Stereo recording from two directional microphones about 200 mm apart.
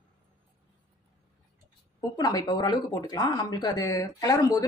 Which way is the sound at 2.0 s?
20° left (ahead or behind).